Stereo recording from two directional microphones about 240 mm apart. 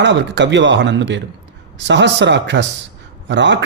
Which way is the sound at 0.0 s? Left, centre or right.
Right.